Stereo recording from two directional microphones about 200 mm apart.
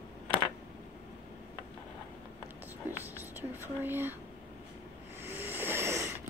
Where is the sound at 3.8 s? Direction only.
10° right (ahead or behind).